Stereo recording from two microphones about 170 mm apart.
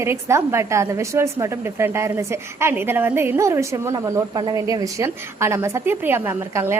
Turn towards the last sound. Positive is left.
turn(degrees=-15)  # may be behind; listen again after turning